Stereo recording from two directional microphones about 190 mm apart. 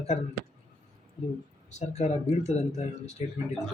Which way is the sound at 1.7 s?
35° left (ahead or behind).